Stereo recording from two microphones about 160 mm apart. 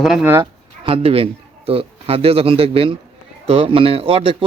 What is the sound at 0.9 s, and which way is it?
A man's voice, 35° right (ahead or behind).